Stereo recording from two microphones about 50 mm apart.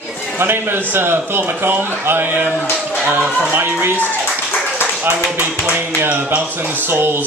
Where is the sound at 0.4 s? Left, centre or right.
Right.